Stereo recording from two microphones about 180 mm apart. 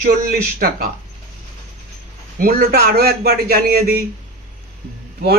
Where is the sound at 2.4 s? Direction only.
55° right (ahead or behind).